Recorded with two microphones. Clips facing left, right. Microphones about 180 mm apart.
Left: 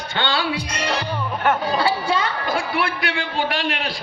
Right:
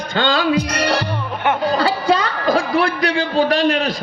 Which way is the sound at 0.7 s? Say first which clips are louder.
Right 6 dB; 70° right (ahead or behind).